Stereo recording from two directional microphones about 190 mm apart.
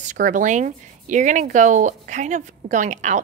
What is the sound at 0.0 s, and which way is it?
A woman's voice, 40° right (ahead or behind).